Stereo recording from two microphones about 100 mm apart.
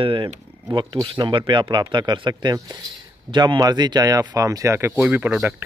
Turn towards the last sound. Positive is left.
turn(degrees=-20)  # may be behind; listen again after turning